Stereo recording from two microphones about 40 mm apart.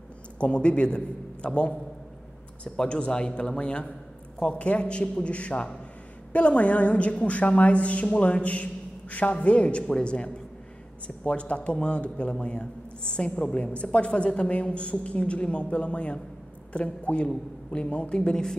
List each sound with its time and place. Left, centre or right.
0.4 s a woman's voice: left